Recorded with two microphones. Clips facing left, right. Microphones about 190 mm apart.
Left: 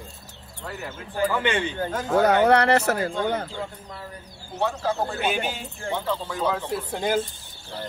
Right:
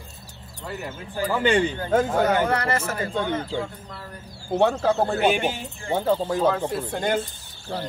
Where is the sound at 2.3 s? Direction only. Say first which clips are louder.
Left 4 dB; 70° left (ahead or behind).